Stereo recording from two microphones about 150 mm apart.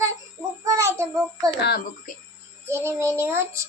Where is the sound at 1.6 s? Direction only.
90° left.